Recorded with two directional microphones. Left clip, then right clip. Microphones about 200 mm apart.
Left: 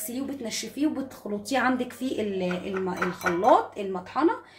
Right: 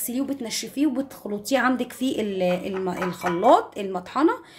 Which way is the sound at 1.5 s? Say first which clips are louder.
Right 3 dB; 35° right (ahead or behind).